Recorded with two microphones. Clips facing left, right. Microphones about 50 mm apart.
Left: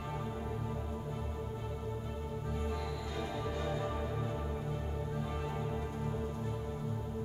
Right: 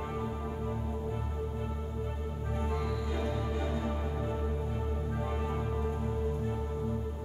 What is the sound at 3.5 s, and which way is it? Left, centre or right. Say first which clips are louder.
Music: right 2 dB; centre.